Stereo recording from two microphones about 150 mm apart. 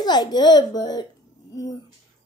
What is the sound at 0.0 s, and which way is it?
A child's voice, 30° left (ahead or behind).